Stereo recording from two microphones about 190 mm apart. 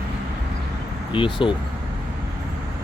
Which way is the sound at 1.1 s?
25° left (ahead or behind).